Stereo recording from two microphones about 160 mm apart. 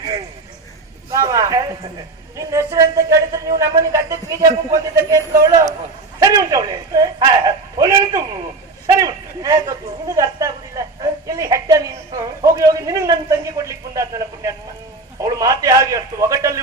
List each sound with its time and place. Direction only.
1.1 s a woman's voice: 20° right (ahead or behind)